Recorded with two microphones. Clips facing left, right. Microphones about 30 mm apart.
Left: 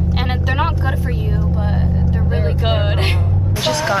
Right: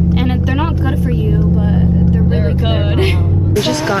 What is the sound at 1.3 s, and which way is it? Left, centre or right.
Speech, left.